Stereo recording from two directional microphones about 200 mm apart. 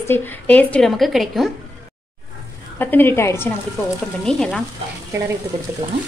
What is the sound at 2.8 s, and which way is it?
Speech, 10° left (ahead or behind).